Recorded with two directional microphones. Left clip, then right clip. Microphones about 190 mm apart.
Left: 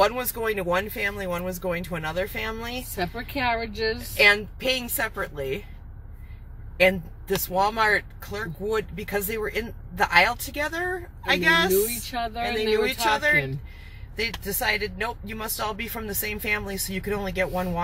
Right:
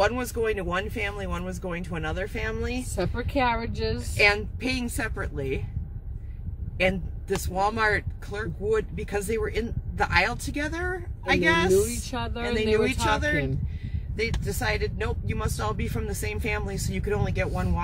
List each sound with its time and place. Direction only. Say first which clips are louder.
0.1 s speech: even; 15° left (ahead or behind)
3.1 s speech: right 2 dB; 25° right (ahead or behind)
4.2 s speech: left 3 dB; 15° left (ahead or behind)
6.8 s speech: left 5 dB; 15° left (ahead or behind)
12.1 s speech: left 4 dB; 25° right (ahead or behind)
12.5 s speech: even; 15° left (ahead or behind)